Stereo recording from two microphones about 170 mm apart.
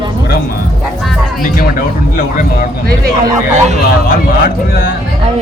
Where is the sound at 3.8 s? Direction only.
60° left (ahead or behind).